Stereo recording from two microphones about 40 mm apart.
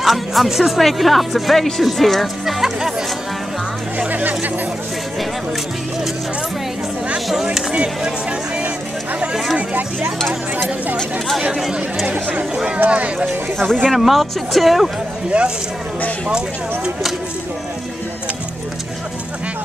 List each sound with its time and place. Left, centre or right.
0.0 s speech: centre
2.4 s speech: centre
4.1 s a sound: right
7.7 s speech: right
9.6 s speech: right
11.5 s speech: centre
12.1 s speech: right
13.9 s speech: centre
15.3 s speech: right